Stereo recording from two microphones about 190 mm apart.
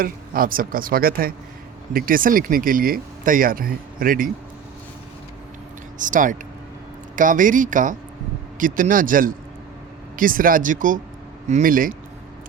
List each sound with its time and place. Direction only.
0.0 s speech: 50° right (ahead or behind)
6.0 s speech: 45° right (ahead or behind)